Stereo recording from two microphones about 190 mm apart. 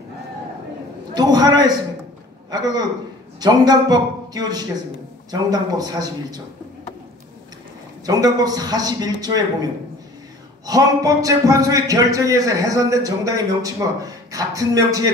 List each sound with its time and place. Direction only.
1.1 s a man's voice: 20° right (ahead or behind)
8.0 s a man's voice: 20° right (ahead or behind)